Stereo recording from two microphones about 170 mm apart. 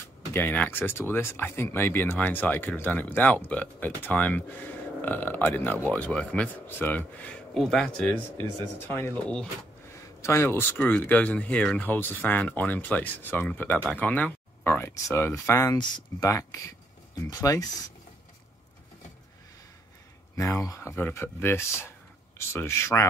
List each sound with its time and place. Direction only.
0.3 s speech: 10° left (ahead or behind)
20.6 s speech: 15° left (ahead or behind)